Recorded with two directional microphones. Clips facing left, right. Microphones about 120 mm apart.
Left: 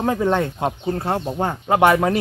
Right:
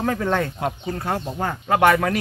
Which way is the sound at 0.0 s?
20° left (ahead or behind).